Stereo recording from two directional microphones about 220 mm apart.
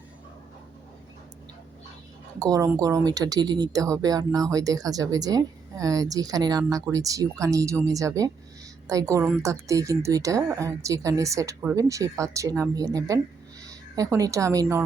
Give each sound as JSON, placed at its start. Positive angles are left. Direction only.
{"t": 2.4, "sound": "a woman's voice", "side_deg": -15}